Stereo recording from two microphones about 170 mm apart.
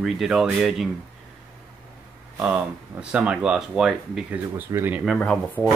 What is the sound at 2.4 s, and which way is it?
Speech, 5° right (ahead or behind).